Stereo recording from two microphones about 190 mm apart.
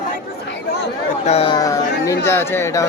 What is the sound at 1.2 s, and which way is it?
Speech, 30° left (ahead or behind).